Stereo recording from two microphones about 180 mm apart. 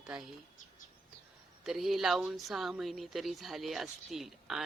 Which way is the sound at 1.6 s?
Centre (ahead or behind).